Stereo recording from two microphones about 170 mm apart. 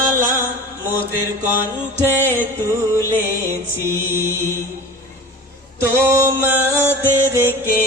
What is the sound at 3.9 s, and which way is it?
Music, 15° right (ahead or behind).